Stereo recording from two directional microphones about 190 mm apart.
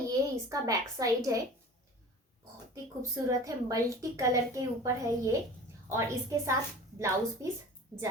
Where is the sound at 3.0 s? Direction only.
15° right (ahead or behind).